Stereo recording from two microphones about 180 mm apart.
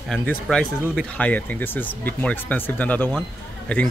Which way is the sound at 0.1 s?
5° left (ahead or behind).